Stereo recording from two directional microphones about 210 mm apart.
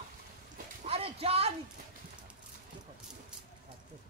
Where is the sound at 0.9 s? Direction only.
30° right (ahead or behind).